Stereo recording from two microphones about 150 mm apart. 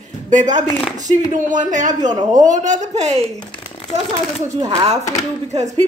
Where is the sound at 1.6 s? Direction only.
55° right (ahead or behind).